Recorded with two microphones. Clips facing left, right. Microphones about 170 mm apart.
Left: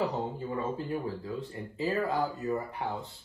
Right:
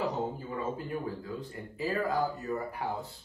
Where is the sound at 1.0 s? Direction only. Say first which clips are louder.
Left 2 dB; 30° left (ahead or behind).